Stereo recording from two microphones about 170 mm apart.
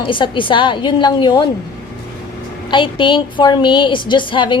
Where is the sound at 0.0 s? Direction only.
30° left (ahead or behind).